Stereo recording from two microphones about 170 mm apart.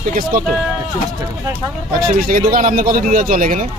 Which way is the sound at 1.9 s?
55° right (ahead or behind).